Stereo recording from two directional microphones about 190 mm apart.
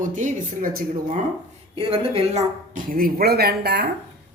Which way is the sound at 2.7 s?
50° right (ahead or behind).